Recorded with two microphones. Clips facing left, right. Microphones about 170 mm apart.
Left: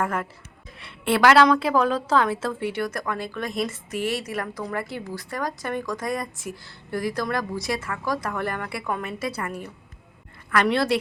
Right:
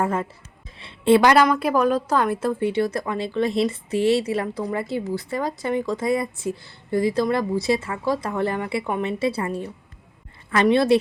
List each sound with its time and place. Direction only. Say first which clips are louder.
0.0 s a woman's voice: right 3 dB; 25° right (ahead or behind)